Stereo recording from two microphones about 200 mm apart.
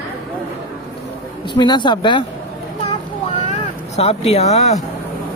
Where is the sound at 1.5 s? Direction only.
20° left (ahead or behind).